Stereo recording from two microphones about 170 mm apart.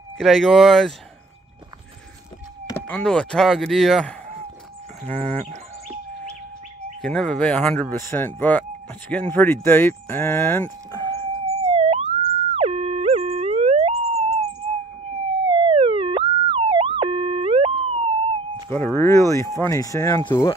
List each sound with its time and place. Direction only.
0.2 s speech: centre (ahead or behind)
2.7 s speech: 5° left (ahead or behind)
5.0 s fowl: 10° left (ahead or behind)
5.5 s chirp: 40° right (ahead or behind)
7.0 s fowl: 5° left (ahead or behind)
9.1 s speech: 10° left (ahead or behind)
11.1 s police car: 35° right (ahead or behind)
12.5 s music: 35° right (ahead or behind)
14.6 s a sound: 40° right (ahead or behind)
15.4 s siren: 30° right (ahead or behind)
18.7 s fowl: 15° left (ahead or behind)
19.6 s speech: 20° left (ahead or behind)